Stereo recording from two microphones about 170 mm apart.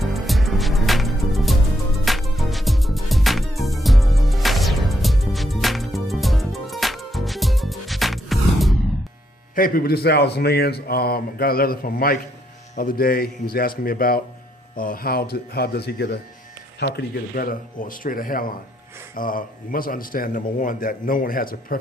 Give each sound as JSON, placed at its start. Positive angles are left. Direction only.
{"t": 0.0, "sound": "music", "side_deg": 0}
{"t": 9.6, "sound": "a man's voice", "side_deg": 55}
{"t": 16.8, "sound": "a man's voice", "side_deg": 70}